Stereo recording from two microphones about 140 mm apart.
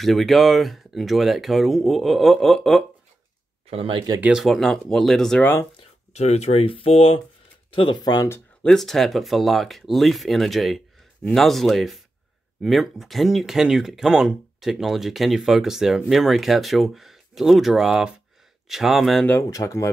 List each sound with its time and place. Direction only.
0.0 s speech: centre (ahead or behind)
3.7 s speech: 40° right (ahead or behind)
4.2 s speech: 5° right (ahead or behind)
5.8 s speech: 50° left (ahead or behind)
7.7 s speech: 35° left (ahead or behind)
8.6 s speech: centre (ahead or behind)
19.5 s speech: 25° left (ahead or behind)